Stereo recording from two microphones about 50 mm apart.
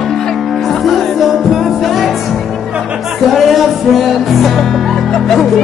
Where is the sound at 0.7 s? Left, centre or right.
Centre.